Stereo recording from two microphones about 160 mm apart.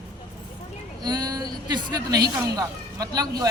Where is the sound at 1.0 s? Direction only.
25° right (ahead or behind).